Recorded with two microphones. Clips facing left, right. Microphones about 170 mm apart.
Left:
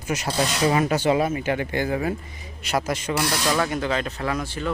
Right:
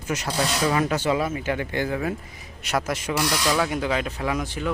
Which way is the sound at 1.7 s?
15° left (ahead or behind).